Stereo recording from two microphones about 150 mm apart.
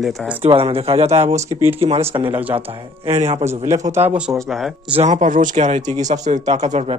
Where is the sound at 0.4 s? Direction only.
40° right (ahead or behind).